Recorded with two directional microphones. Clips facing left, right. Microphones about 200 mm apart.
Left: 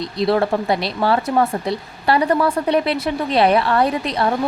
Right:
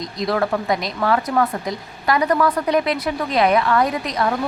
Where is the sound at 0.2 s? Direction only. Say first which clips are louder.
Left 3 dB; 30° left (ahead or behind).